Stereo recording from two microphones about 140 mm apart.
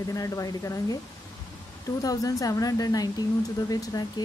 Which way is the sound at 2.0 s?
25° left (ahead or behind).